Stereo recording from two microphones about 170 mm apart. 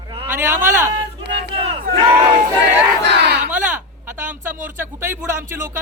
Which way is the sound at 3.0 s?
90° right.